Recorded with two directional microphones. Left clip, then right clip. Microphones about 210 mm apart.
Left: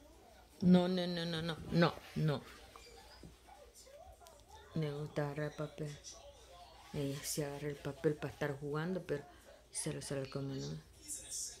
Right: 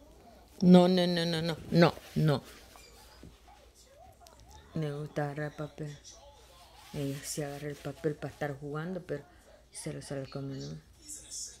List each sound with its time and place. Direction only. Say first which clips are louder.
0.6 s speech: right 10 dB; 35° right (ahead or behind)
4.7 s speech: right 4 dB; 20° right (ahead or behind)
6.9 s speech: right 3 dB; 10° right (ahead or behind)